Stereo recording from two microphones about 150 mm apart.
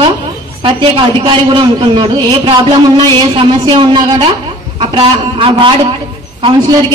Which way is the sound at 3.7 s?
30° right (ahead or behind).